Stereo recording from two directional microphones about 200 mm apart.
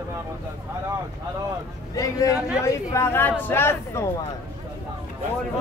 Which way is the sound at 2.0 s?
15° left (ahead or behind).